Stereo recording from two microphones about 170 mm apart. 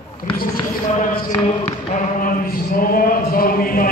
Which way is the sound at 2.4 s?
60° left (ahead or behind).